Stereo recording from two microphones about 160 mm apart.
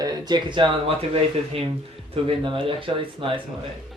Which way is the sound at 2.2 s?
30° right (ahead or behind).